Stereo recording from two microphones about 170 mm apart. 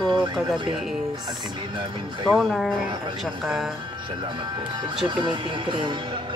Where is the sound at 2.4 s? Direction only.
Centre (ahead or behind).